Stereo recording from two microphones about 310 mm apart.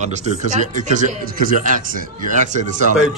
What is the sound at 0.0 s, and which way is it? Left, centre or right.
Speech, right.